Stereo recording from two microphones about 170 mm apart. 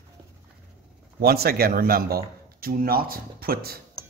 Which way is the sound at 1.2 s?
65° right (ahead or behind).